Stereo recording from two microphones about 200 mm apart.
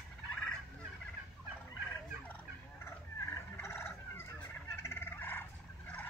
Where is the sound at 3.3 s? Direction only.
10° left (ahead or behind).